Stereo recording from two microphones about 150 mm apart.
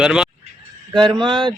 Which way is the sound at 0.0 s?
5° right (ahead or behind).